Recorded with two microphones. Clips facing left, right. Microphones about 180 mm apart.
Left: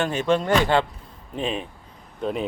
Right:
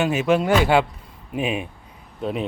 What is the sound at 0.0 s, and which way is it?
Speech, 10° right (ahead or behind).